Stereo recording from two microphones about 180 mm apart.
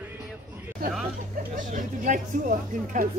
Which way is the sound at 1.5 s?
45° right (ahead or behind).